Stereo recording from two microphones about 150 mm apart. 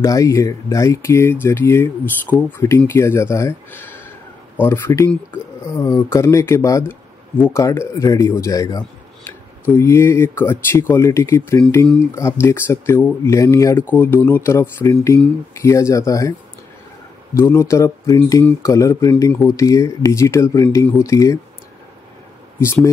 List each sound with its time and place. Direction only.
0.0 s speech: 20° left (ahead or behind)
17.4 s speech: 20° left (ahead or behind)